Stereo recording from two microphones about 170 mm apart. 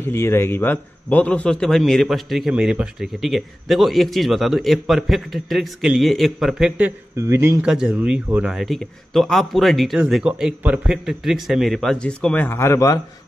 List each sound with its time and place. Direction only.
0.1 s a man's voice: 15° left (ahead or behind); by 6.9 s centre (ahead or behind)
7.2 s speech: 15° right (ahead or behind)
7.6 s a man's voice: 5° right (ahead or behind); by 13.0 s 20° left (ahead or behind)